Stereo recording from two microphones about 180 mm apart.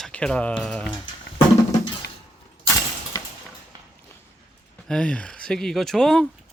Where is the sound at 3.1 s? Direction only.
20° left (ahead or behind).